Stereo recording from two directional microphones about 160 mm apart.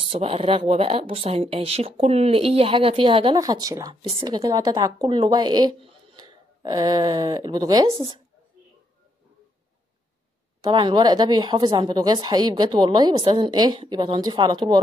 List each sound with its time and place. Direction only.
0.0 s a woman's voice: 35° right (ahead or behind)
7.9 s speech: 35° right (ahead or behind)
10.6 s a woman's voice: 30° right (ahead or behind)